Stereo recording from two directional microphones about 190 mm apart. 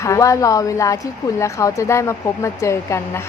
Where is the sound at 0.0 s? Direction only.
15° left (ahead or behind).